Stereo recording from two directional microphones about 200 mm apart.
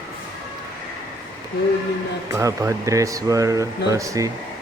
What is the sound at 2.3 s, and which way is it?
Speech, 15° right (ahead or behind).